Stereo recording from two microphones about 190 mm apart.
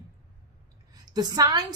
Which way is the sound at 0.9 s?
20° right (ahead or behind).